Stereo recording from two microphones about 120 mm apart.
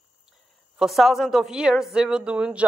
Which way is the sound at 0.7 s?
Centre (ahead or behind).